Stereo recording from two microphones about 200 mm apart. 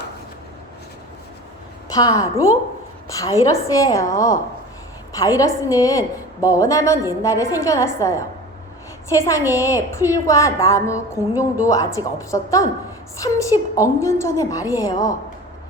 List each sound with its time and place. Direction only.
1.9 s a woman's voice: 15° left (ahead or behind)